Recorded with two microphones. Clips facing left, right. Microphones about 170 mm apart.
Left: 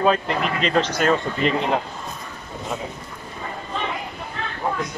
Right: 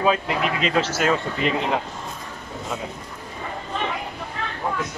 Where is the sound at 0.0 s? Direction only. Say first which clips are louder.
Left 1 dB; 5° right (ahead or behind).